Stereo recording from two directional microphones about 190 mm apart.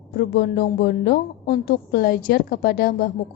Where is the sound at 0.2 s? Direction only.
55° left (ahead or behind).